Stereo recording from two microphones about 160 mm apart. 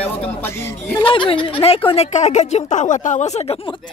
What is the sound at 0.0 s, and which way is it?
Speech, 10° left (ahead or behind).